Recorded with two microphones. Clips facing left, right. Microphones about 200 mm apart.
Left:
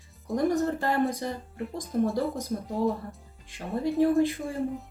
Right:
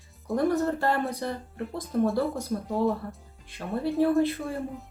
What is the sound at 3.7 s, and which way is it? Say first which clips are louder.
Speech: even; 15° left (ahead or behind).